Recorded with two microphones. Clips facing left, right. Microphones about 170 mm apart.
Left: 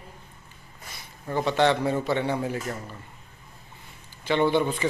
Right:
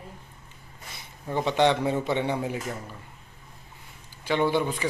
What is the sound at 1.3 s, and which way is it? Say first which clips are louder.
A man's voice: even; 15° right (ahead or behind).